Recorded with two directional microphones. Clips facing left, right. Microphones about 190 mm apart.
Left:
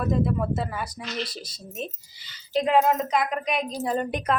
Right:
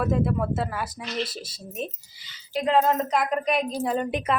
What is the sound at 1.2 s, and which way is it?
Speech, 25° right (ahead or behind).